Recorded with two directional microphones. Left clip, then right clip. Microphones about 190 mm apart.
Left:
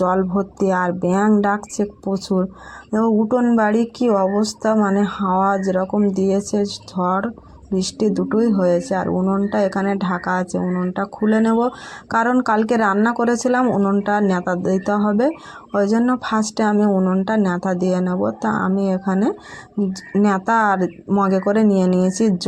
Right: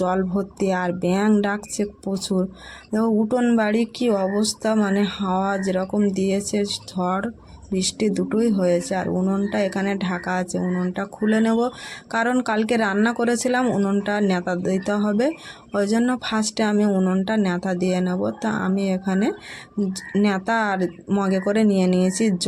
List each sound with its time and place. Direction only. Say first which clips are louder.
0.6 s speech: left 4 dB; centre (ahead or behind)
13.7 s speech: left 4 dB; 15° right (ahead or behind)